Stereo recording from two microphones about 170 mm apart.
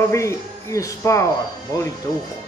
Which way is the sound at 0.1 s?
15° left (ahead or behind).